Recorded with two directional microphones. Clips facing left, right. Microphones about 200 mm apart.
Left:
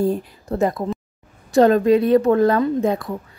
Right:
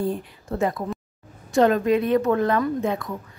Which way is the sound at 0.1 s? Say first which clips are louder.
Left 5 dB; 35° left (ahead or behind).